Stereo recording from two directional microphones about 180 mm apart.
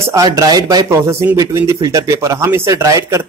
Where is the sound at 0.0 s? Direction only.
15° right (ahead or behind).